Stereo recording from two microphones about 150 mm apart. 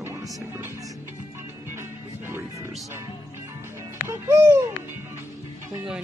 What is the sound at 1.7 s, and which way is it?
Music, 15° right (ahead or behind).